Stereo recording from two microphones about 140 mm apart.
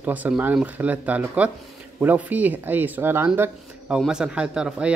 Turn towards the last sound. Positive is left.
turn(degrees=-5)  # may be behind; listen again after turning